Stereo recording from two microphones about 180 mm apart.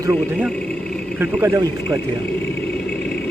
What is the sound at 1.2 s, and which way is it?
Speech, 10° right (ahead or behind).